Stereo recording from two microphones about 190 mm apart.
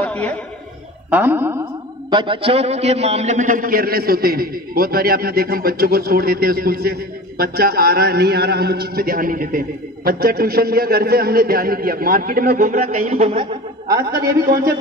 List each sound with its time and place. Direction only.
0.0 s a sound: 5° left (ahead or behind)
1.1 s speech: 10° right (ahead or behind)
1.6 s a man's voice: 25° right (ahead or behind)